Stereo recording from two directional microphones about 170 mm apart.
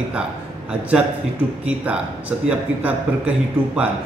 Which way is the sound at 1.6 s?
10° right (ahead or behind).